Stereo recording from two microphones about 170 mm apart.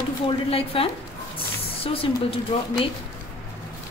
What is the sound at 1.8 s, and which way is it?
Speech, 35° left (ahead or behind).